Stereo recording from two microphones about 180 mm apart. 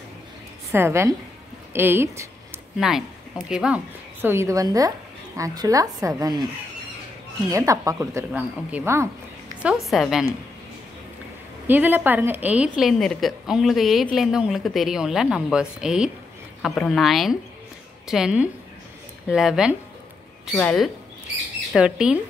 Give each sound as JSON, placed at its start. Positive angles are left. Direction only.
{"t": 0.7, "sound": "a woman's voice", "side_deg": -15}
{"t": 7.5, "sound": "speech", "side_deg": -20}
{"t": 9.6, "sound": "a woman's voice", "side_deg": -5}
{"t": 11.6, "sound": "a woman's voice", "side_deg": -10}